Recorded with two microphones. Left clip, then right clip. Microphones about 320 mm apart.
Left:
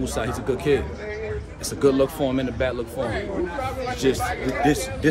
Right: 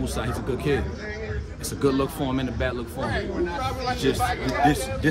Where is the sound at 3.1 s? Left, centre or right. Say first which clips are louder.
Even; right.